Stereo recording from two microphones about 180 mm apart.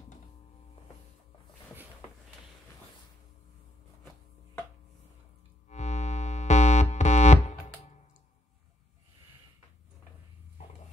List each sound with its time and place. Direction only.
5.7 s music: 40° left (ahead or behind)